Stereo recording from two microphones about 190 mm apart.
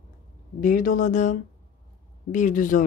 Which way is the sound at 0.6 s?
45° left (ahead or behind).